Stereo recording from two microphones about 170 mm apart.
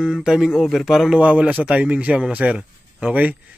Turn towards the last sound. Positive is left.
turn(degrees=-10)  # may be behind; listen again after turning